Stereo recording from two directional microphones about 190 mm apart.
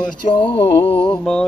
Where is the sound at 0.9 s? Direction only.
5° left (ahead or behind).